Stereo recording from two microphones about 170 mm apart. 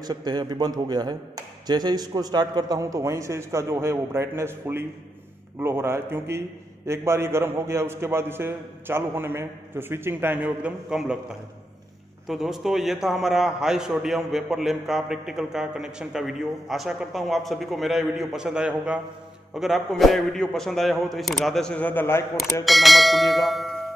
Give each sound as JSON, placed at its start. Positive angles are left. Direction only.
{"t": 0.0, "sound": "a man's voice", "side_deg": -25}
{"t": 12.3, "sound": "a man's voice", "side_deg": 0}
{"t": 22.4, "sound": "a man's voice", "side_deg": 0}